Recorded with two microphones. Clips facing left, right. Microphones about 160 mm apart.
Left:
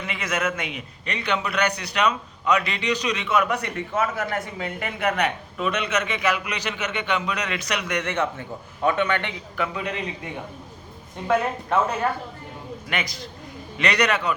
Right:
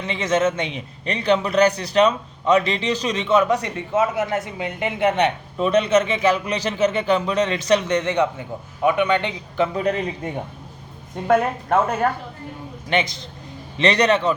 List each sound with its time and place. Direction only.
0.0 s a man's voice: 25° right (ahead or behind)
9.7 s a man's voice: 40° right (ahead or behind)
11.3 s speech: 50° right (ahead or behind)
12.9 s a man's voice: 25° right (ahead or behind)